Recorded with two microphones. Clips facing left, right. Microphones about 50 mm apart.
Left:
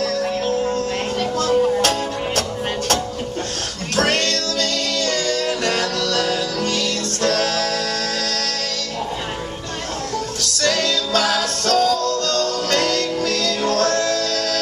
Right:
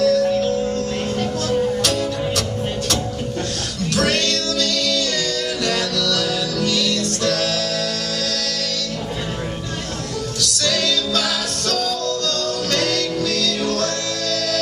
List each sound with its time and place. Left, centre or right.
0.0 s music: left
3.9 s music: left
10.4 s music: left